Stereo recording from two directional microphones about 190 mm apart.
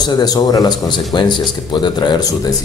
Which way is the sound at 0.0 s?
20° left (ahead or behind).